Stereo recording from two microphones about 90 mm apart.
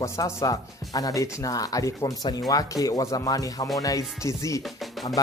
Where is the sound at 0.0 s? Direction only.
35° left (ahead or behind).